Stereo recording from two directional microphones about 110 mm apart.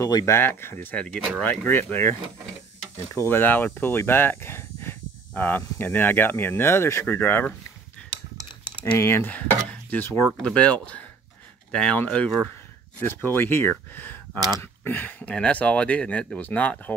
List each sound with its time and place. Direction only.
0.0 s speech: 30° left (ahead or behind)
0.9 s speech: 10° left (ahead or behind)
3.3 s speech: 20° left (ahead or behind)
8.9 s speech: 25° left (ahead or behind)